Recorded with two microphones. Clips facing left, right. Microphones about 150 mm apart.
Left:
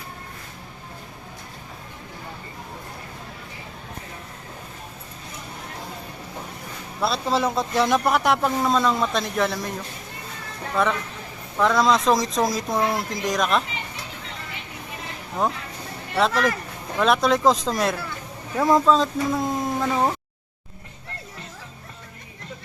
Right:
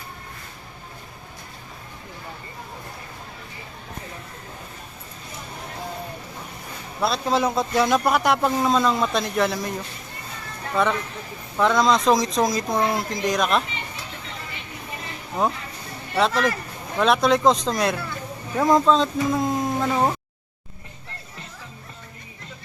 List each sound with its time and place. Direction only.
7.0 s speech: centre (ahead or behind)
10.8 s speech: centre (ahead or behind)
15.4 s speech: centre (ahead or behind)